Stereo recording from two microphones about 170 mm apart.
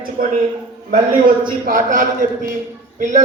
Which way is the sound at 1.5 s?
55° right (ahead or behind).